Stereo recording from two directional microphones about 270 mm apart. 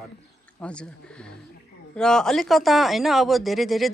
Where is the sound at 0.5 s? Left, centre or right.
Centre.